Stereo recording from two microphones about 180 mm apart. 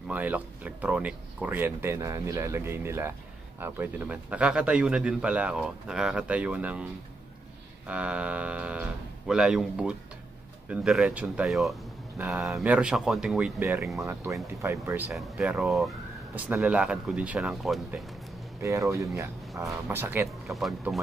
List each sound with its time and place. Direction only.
0.1 s speech: 10° right (ahead or behind)
18.6 s speech: 15° right (ahead or behind)
20.4 s speech: centre (ahead or behind)